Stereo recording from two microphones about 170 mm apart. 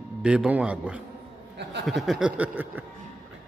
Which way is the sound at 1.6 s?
90° right.